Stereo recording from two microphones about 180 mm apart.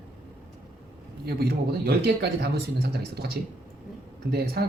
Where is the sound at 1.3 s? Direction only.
60° right (ahead or behind).